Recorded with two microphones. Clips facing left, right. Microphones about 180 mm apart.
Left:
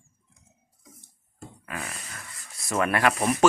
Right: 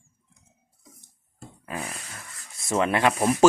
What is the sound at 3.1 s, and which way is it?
Speech, centre (ahead or behind).